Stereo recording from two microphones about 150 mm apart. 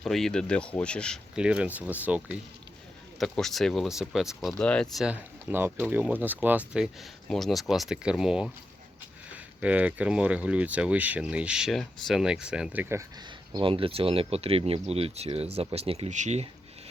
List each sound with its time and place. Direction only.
0.0 s speech: centre (ahead or behind)
1.4 s speech: 5° right (ahead or behind)
3.2 s speech: centre (ahead or behind)
5.0 s speech: 10° right (ahead or behind)
9.6 s speech: 10° right (ahead or behind)
13.5 s speech: 35° right (ahead or behind); by 16.5 s 50° right (ahead or behind)